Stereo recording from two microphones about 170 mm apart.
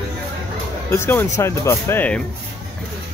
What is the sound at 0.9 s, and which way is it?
Speech, 15° left (ahead or behind).